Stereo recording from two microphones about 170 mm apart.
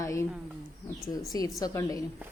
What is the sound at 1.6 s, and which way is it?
Speech, 20° left (ahead or behind).